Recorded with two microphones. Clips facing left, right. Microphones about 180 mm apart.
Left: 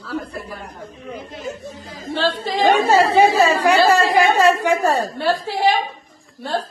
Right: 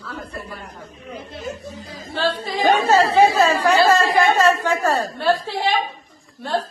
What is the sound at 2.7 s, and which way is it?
A woman's voice, 10° left (ahead or behind).